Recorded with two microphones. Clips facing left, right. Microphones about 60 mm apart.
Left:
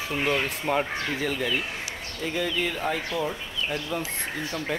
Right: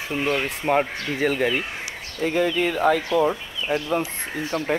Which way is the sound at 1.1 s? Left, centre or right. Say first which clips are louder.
Right 8 dB; right.